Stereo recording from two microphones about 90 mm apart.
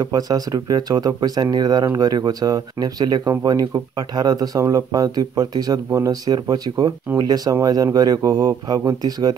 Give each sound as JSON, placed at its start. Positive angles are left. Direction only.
{"t": 0.0, "sound": "speech", "side_deg": -45}